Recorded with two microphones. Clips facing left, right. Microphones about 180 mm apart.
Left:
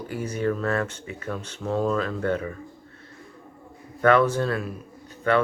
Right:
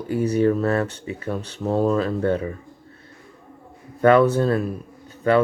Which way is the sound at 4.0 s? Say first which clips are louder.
Right 4 dB; 30° right (ahead or behind).